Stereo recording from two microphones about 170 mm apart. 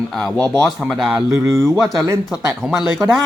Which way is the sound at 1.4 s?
15° right (ahead or behind).